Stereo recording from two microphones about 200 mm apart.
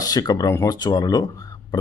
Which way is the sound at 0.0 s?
20° left (ahead or behind).